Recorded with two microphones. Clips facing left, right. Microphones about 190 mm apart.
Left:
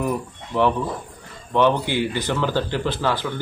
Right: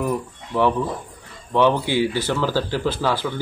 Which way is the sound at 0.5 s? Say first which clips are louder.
Right 1 dB; 10° right (ahead or behind).